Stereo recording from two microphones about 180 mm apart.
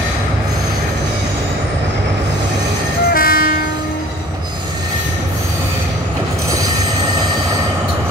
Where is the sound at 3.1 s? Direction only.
55° left (ahead or behind).